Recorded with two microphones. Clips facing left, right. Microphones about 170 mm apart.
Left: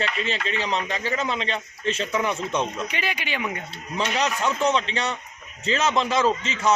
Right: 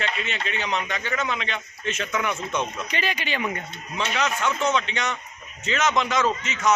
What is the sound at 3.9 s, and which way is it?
A man's voice, 35° left (ahead or behind).